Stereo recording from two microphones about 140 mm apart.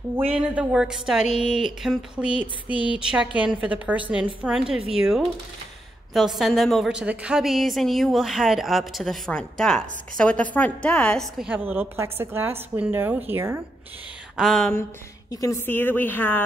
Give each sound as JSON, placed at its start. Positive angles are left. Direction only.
{"t": 0.4, "sound": "a woman's voice", "side_deg": -5}
{"t": 1.2, "sound": "speech", "side_deg": 50}
{"t": 1.5, "sound": "a woman's voice", "side_deg": -5}
{"t": 11.3, "sound": "a woman's voice", "side_deg": -10}
{"t": 14.3, "sound": "a sound", "side_deg": 0}
{"t": 15.4, "sound": "a woman's voice", "side_deg": 20}